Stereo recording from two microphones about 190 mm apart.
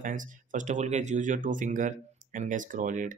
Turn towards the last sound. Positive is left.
turn(degrees=-45)  # may be behind; listen again after turning